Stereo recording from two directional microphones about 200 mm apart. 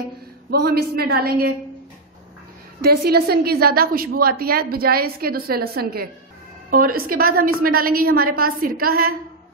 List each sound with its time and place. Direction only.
0.5 s a woman's voice: 50° right (ahead or behind)
2.8 s a woman's voice: 50° right (ahead or behind)